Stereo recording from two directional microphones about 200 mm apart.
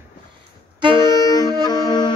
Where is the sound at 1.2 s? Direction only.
20° left (ahead or behind).